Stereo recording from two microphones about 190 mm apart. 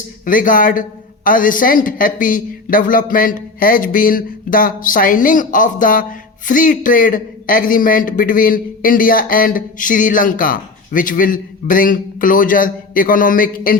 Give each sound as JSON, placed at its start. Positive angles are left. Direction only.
{"t": 0.3, "sound": "a woman's voice", "side_deg": 45}